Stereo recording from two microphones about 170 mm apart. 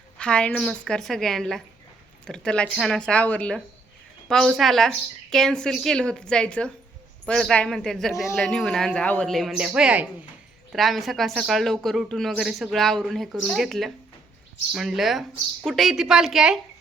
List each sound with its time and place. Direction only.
0.2 s speech: 5° left (ahead or behind)
8.1 s speech: 20° left (ahead or behind)
8.4 s speech: centre (ahead or behind)